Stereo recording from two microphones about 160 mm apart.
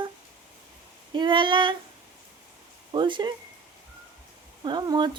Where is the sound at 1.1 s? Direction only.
30° right (ahead or behind).